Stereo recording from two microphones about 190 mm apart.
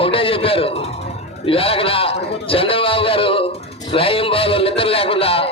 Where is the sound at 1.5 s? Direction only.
30° left (ahead or behind).